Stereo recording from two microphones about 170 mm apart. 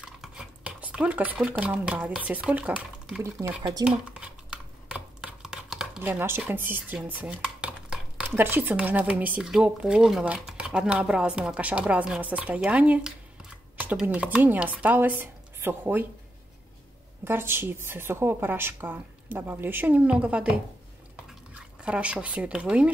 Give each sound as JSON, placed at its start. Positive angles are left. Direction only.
{"t": 0.0, "sound": "speech", "side_deg": -5}
{"t": 3.4, "sound": "speech", "side_deg": -25}
{"t": 3.8, "sound": "a woman's voice", "side_deg": -5}
{"t": 17.2, "sound": "a woman's voice", "side_deg": -15}
{"t": 21.5, "sound": "speech", "side_deg": -5}